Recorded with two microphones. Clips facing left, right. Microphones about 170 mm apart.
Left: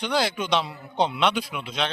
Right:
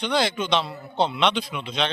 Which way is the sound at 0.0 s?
10° left (ahead or behind).